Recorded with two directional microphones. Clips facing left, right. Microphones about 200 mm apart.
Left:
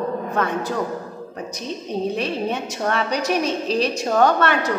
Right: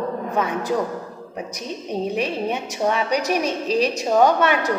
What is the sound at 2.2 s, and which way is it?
A woman's voice, 15° right (ahead or behind).